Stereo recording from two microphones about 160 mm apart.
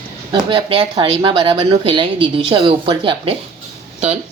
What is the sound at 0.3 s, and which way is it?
Speech, 30° right (ahead or behind).